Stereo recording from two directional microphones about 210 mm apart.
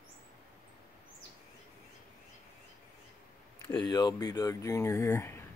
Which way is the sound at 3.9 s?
20° left (ahead or behind).